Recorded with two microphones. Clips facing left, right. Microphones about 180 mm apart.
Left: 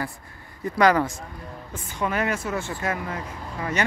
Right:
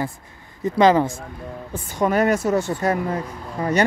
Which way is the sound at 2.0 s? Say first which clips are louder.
Right 7 dB; 40° right (ahead or behind).